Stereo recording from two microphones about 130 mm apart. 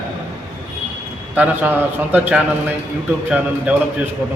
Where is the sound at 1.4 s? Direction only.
15° right (ahead or behind).